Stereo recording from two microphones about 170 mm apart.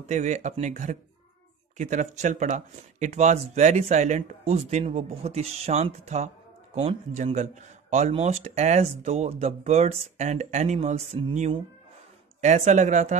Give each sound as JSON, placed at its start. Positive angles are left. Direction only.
{"t": 0.1, "sound": "speech", "side_deg": -45}